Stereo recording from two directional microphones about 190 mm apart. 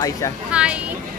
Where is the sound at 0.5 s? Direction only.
5° right (ahead or behind).